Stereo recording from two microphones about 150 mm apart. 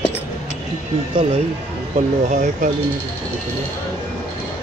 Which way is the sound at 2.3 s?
55° right (ahead or behind).